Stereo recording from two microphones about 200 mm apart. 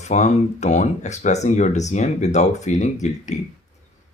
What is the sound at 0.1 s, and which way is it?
Speech, 35° left (ahead or behind).